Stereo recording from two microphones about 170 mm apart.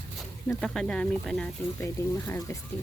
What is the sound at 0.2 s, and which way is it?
Speech, 5° left (ahead or behind).